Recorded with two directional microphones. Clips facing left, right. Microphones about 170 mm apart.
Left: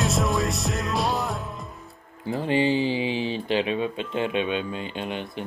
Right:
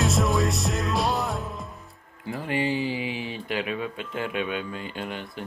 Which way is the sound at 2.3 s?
25° left (ahead or behind).